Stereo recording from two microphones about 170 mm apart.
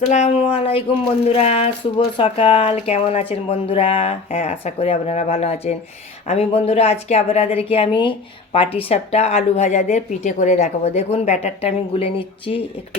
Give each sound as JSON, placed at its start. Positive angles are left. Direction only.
{"t": 0.1, "sound": "speech", "side_deg": 40}